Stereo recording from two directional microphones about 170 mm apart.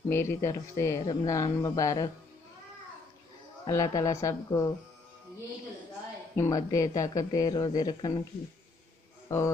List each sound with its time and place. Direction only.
0.1 s speech: 15° left (ahead or behind)
3.6 s speech: 20° left (ahead or behind)
6.3 s speech: 20° left (ahead or behind)
9.3 s speech: 15° left (ahead or behind)